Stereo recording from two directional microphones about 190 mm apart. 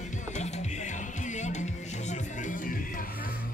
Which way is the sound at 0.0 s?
40° left (ahead or behind).